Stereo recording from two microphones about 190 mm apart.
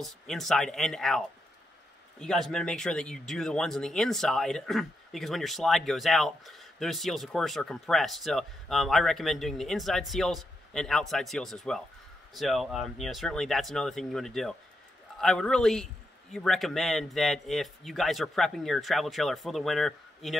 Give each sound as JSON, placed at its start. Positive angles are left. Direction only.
{"t": 0.0, "sound": "speech", "side_deg": 0}